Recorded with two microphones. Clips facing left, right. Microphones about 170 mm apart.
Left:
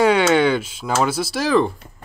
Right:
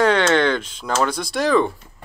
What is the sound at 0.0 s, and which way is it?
Speech, 10° left (ahead or behind).